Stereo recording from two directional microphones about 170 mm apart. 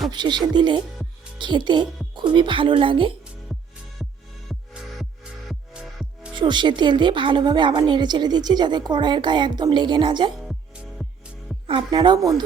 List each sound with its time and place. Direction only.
0.1 s a woman's voice: 25° right (ahead or behind)
3.5 s music: centre (ahead or behind)
6.3 s a woman's voice: 25° right (ahead or behind)
10.4 s music: centre (ahead or behind)
11.6 s a woman's voice: 30° right (ahead or behind)